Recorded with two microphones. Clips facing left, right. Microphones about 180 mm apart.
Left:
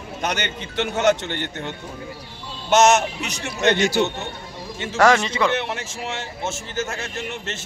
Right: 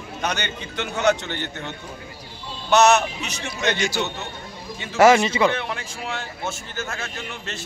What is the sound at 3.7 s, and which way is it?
Speech, 60° left (ahead or behind).